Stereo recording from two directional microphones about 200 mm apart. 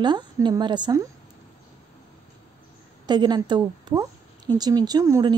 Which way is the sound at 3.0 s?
20° right (ahead or behind).